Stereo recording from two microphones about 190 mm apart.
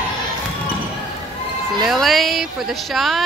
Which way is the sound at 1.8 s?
Centre (ahead or behind).